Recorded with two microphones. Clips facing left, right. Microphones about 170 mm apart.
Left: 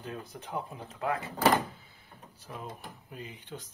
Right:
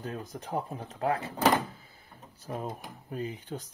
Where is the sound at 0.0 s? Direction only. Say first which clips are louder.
Right 3 dB; 40° right (ahead or behind).